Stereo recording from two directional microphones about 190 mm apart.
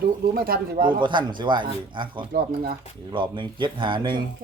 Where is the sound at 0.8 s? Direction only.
25° right (ahead or behind).